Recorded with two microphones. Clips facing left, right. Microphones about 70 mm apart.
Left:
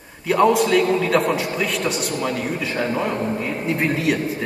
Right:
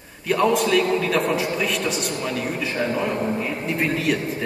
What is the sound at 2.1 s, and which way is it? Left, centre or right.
Speech, left.